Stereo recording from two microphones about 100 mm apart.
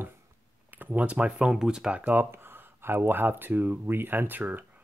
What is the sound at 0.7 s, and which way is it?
Speech, 15° right (ahead or behind).